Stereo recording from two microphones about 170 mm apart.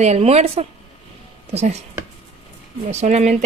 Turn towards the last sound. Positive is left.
turn(degrees=-40)  # may be behind; listen again after turning